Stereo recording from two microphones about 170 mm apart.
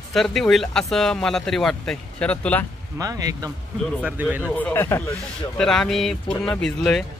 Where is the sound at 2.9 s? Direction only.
20° right (ahead or behind).